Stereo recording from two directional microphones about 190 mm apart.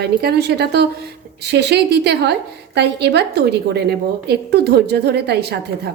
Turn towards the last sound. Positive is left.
turn(degrees=-60)  # may be behind; listen again after turning